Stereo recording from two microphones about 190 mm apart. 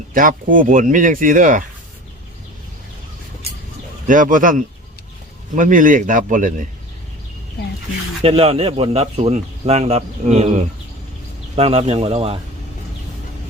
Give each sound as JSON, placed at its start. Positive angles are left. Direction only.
{"t": 0.1, "sound": "speech", "side_deg": -45}
{"t": 4.0, "sound": "speech", "side_deg": -45}
{"t": 8.2, "sound": "speech", "side_deg": -30}